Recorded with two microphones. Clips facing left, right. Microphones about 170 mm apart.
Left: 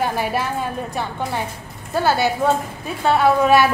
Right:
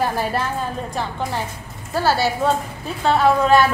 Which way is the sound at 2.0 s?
20° left (ahead or behind).